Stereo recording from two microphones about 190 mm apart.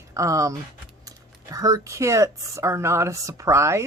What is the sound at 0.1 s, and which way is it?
Speech, 15° right (ahead or behind).